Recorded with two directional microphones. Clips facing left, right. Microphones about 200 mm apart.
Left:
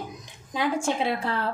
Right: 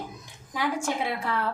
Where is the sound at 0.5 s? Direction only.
25° left (ahead or behind).